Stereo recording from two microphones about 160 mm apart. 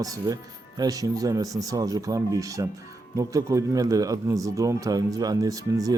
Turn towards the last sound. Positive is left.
turn(degrees=-20)  # may be behind; listen again after turning